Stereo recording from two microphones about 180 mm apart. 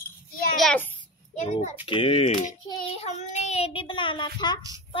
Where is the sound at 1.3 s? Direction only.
40° left (ahead or behind).